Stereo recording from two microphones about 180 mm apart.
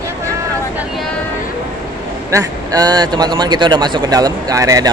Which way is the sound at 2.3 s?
20° right (ahead or behind).